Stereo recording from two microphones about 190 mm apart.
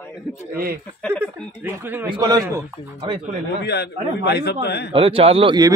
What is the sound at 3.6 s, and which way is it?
A man's voice, 60° left (ahead or behind).